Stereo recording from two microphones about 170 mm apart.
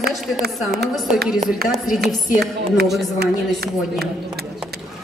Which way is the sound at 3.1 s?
70° right (ahead or behind).